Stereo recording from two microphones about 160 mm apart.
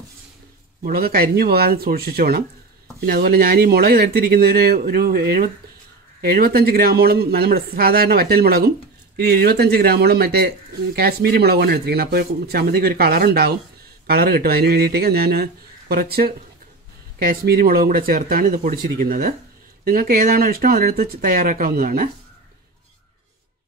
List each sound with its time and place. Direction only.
0.8 s speech: 65° right (ahead or behind)